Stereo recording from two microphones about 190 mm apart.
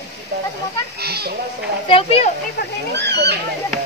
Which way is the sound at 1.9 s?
30° left (ahead or behind).